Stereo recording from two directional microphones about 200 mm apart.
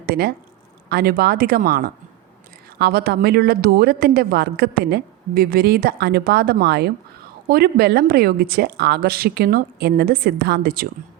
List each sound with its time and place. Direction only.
0.0 s a woman's voice: 50° right (ahead or behind)